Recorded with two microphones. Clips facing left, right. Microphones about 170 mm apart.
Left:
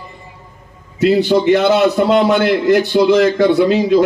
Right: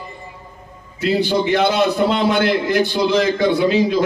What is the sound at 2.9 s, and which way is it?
A man's voice, 60° left (ahead or behind).